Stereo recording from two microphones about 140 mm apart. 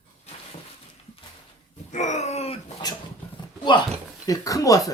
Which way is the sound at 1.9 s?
55° left (ahead or behind).